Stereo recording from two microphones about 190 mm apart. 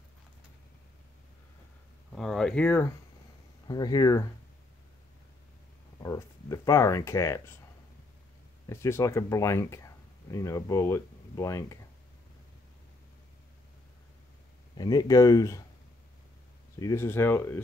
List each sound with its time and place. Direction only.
2.1 s speech: centre (ahead or behind)
3.6 s speech: 20° left (ahead or behind)
6.0 s speech: 15° left (ahead or behind)
8.6 s speech: 15° left (ahead or behind)
14.8 s speech: 20° left (ahead or behind)
16.8 s speech: 15° left (ahead or behind)